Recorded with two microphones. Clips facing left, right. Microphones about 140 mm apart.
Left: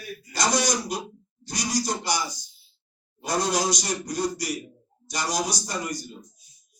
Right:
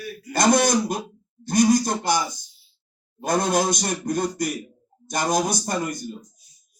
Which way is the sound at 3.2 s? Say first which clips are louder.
Right 4 dB; 50° right (ahead or behind).